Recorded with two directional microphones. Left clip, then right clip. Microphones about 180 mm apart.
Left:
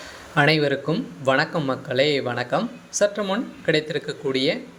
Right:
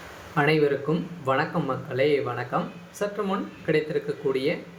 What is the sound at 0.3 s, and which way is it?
Speech, 40° left (ahead or behind).